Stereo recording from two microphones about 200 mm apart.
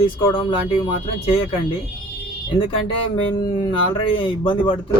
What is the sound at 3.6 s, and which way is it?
Speech, 25° left (ahead or behind).